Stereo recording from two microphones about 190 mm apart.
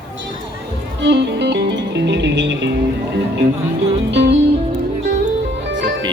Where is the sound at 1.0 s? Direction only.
65° right (ahead or behind).